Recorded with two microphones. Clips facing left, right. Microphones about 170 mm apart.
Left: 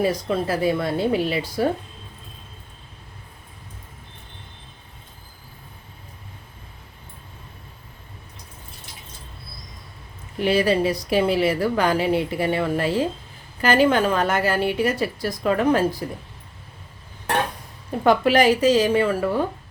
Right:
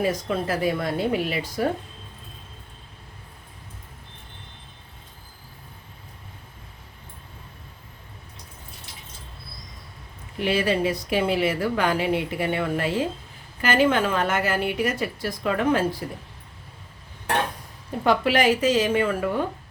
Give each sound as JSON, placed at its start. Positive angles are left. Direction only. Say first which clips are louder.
{"t": 0.0, "sound": "a woman's voice", "louder": "left 3 dB", "side_deg": 30}
{"t": 10.4, "sound": "speech", "louder": "left 3 dB", "side_deg": 40}
{"t": 18.0, "sound": "speech", "louder": "left 3 dB", "side_deg": 45}